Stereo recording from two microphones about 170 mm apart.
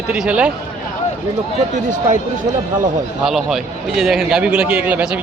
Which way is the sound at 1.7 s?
45° right (ahead or behind).